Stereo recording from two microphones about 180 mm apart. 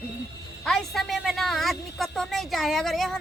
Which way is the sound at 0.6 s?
Centre (ahead or behind).